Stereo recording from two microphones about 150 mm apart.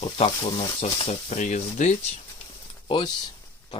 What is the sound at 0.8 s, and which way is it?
Speech, 45° left (ahead or behind).